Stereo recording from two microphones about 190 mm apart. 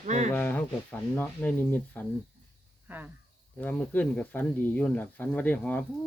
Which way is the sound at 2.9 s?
10° right (ahead or behind).